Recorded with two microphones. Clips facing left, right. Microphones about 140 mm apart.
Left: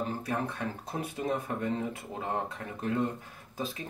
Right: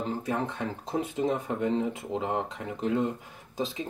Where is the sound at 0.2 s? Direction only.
20° right (ahead or behind).